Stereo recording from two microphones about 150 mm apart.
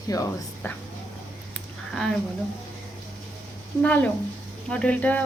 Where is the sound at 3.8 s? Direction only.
10° left (ahead or behind).